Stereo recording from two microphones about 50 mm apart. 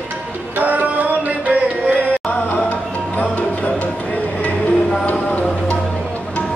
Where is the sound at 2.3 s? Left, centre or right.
Left.